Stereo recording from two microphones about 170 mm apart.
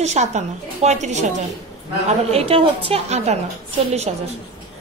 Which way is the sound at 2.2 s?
35° right (ahead or behind).